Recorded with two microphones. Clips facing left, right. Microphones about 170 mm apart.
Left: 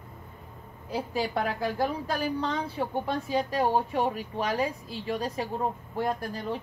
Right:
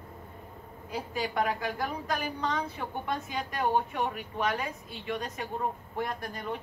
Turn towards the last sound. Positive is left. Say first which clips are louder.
# left 3 dB
turn(degrees=35)  # may be behind; listen again after turning